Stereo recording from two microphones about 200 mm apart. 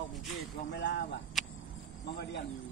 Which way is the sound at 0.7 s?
60° left (ahead or behind).